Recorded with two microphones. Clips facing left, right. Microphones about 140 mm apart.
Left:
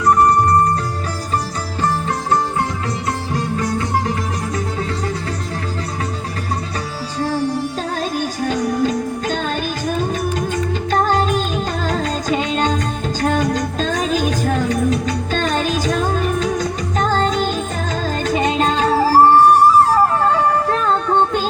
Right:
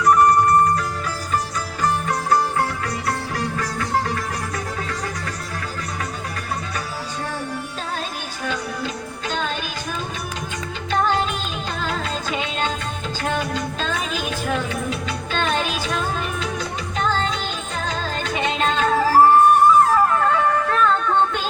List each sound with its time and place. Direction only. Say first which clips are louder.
0.0 s music: left 1 dB; 30° left (ahead or behind)
3.3 s music: left 5 dB; 20° left (ahead or behind)
7.2 s music: left 11 dB; 30° left (ahead or behind)